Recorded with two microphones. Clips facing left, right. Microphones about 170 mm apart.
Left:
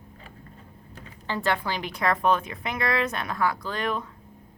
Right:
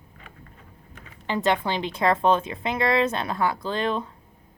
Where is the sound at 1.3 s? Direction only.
20° right (ahead or behind).